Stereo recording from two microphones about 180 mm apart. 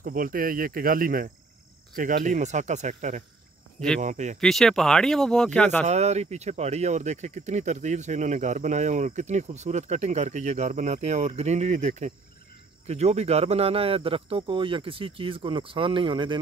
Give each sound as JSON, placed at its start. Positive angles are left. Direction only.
{"t": 0.0, "sound": "speech", "side_deg": -50}
{"t": 4.4, "sound": "speech", "side_deg": 0}
{"t": 5.9, "sound": "speech", "side_deg": -40}